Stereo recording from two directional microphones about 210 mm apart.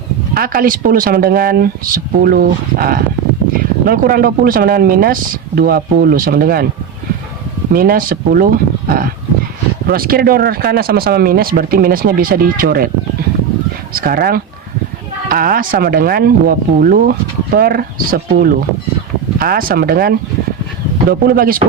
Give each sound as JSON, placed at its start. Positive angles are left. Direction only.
{"t": 0.3, "sound": "speech", "side_deg": -40}
{"t": 7.7, "sound": "speech", "side_deg": -45}
{"t": 13.9, "sound": "speech", "side_deg": -45}